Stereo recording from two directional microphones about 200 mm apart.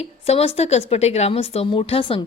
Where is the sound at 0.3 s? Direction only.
30° left (ahead or behind).